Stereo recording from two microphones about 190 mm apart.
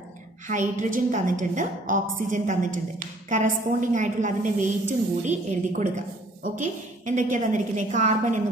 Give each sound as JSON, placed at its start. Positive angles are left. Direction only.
{"t": 0.5, "sound": "a woman's voice", "side_deg": -40}